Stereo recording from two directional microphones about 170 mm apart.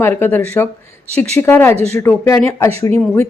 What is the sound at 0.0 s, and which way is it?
A woman's voice, 10° left (ahead or behind).